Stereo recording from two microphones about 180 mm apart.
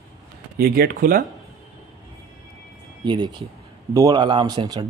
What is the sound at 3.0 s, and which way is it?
A man's voice, 25° right (ahead or behind).